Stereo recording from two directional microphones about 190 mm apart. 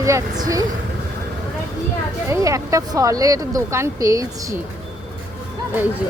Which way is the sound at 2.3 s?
15° right (ahead or behind).